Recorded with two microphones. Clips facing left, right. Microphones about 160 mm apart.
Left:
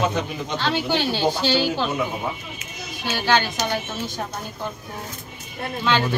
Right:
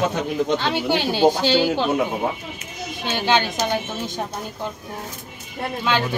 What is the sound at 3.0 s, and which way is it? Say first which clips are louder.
Speech: right 1 dB; 20° right (ahead or behind).